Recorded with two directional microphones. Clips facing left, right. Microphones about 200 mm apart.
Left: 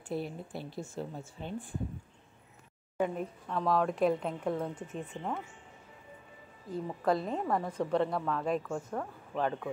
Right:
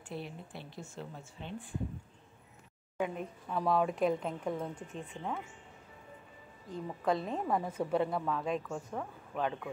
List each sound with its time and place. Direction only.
0.1 s speech: 40° left (ahead or behind)
3.0 s a woman's voice: 5° right (ahead or behind)
6.7 s a woman's voice: centre (ahead or behind)